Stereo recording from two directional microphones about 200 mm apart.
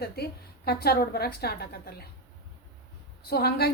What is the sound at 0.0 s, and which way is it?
A woman's voice, 50° left (ahead or behind).